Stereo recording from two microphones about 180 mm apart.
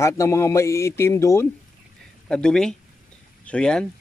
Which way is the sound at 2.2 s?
5° left (ahead or behind).